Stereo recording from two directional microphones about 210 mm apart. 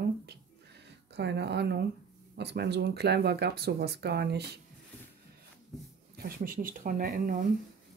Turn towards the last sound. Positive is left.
turn(degrees=-40)  # may be behind; listen again after turning